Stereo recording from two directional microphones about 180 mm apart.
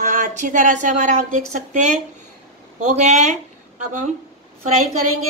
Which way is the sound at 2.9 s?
40° right (ahead or behind).